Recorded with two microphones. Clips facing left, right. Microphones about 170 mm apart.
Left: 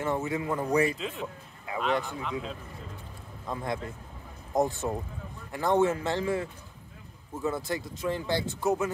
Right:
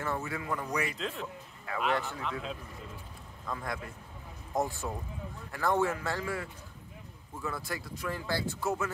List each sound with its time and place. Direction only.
0.0 s speech: 20° left (ahead or behind)
0.9 s speech: centre (ahead or behind)
2.0 s speech: 15° left (ahead or behind)
3.4 s speech: 20° left (ahead or behind)